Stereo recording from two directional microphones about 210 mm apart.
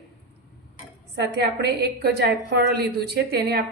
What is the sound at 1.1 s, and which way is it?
A woman's voice, 55° right (ahead or behind).